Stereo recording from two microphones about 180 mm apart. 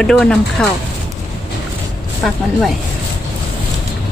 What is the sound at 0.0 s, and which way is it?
Speech, 5° left (ahead or behind).